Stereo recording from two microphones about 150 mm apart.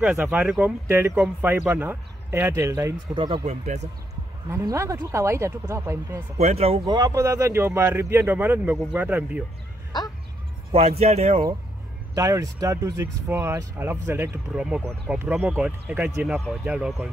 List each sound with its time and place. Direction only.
0.0 s speech: 10° right (ahead or behind)
3.2 s speech: 35° right (ahead or behind)
3.4 s speech: 50° right (ahead or behind)
4.5 s speech: 20° right (ahead or behind)
6.3 s speech: 45° right (ahead or behind)
7.1 s speech: 20° right (ahead or behind)
10.7 s speech: 45° right (ahead or behind)
12.2 s speech: 20° right (ahead or behind)